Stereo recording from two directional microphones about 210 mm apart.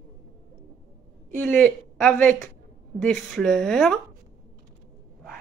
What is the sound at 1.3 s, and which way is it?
A woman's voice, 10° left (ahead or behind).